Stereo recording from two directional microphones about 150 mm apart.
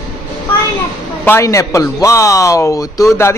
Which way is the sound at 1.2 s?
20° left (ahead or behind).